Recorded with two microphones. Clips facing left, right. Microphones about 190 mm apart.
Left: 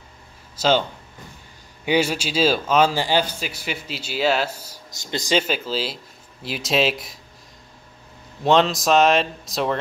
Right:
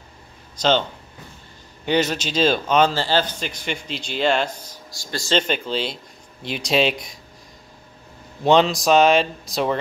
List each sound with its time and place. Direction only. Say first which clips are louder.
0.6 s speech: even; 10° left (ahead or behind)
1.9 s speech: even; 10° left (ahead or behind)
4.9 s speech: left 2 dB; 20° left (ahead or behind)
5.3 s speech: right 1 dB; 5° left (ahead or behind)
8.5 s speech: right 1 dB; centre (ahead or behind)